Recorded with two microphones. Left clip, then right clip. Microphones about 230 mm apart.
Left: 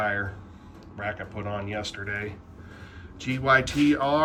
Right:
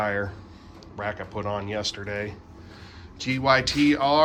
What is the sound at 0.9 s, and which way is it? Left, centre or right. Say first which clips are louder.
Speech: right 2 dB; centre.